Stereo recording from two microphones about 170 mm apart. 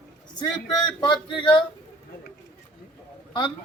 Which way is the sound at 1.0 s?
25° left (ahead or behind).